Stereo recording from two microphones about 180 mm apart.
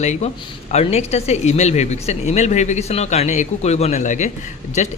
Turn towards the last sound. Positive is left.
turn(degrees=40)  # may be behind; listen again after turning